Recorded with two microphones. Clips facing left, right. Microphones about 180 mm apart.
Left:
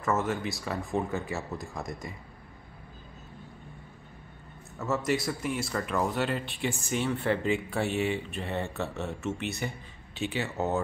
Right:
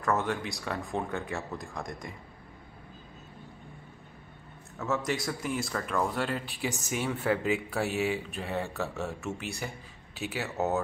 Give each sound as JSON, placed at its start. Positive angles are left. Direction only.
{"t": 0.0, "sound": "speech", "side_deg": 0}
{"t": 4.7, "sound": "speech", "side_deg": 0}